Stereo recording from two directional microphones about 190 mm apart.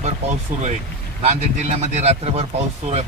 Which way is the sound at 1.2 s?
35° right (ahead or behind).